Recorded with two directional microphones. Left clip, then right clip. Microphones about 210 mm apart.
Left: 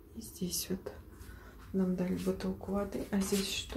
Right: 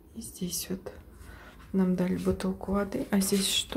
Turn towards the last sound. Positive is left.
turn(degrees=-30)  # may be behind; listen again after turning